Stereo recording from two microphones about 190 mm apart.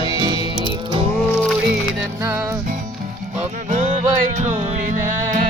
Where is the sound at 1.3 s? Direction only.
5° left (ahead or behind).